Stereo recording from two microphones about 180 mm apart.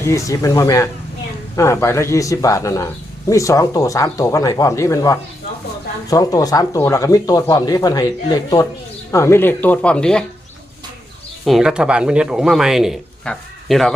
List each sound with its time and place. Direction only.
0.0 s a man's voice: 15° left (ahead or behind)
11.4 s speech: centre (ahead or behind)